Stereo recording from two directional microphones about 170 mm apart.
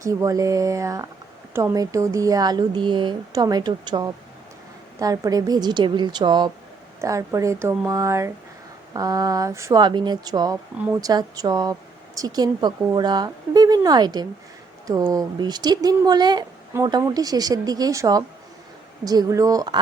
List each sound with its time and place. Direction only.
0.0 s speech: 20° right (ahead or behind)